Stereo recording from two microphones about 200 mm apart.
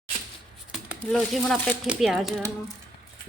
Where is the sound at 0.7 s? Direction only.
5° right (ahead or behind).